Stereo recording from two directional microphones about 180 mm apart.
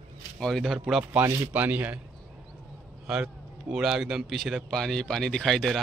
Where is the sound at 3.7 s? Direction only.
Centre (ahead or behind).